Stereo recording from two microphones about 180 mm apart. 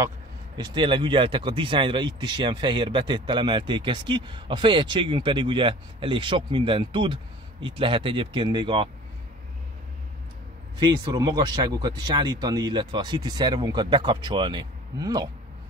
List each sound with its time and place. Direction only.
0.6 s speech: 25° right (ahead or behind)
10.8 s speech: 20° right (ahead or behind)